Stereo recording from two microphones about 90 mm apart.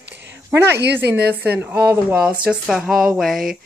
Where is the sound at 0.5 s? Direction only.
25° right (ahead or behind).